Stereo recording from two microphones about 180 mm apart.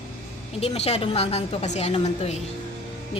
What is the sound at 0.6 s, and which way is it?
A woman's voice, 35° left (ahead or behind).